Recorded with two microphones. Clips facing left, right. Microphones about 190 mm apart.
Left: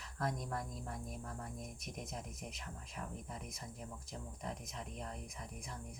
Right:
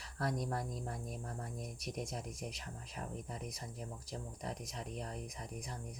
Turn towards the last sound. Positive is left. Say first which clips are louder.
# right 3 dB
turn(degrees=-40)  # may be behind; listen again after turning